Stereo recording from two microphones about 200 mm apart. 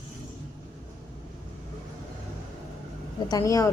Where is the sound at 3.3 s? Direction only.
15° left (ahead or behind).